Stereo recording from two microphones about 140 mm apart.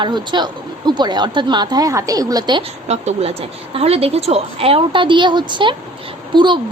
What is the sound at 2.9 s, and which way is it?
A woman's voice, 50° right (ahead or behind).